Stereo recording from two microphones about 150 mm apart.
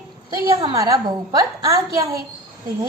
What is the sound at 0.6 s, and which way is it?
A woman's voice, 20° right (ahead or behind).